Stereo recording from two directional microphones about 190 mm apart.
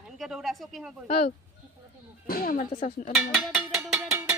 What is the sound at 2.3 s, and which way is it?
Speech, 50° left (ahead or behind).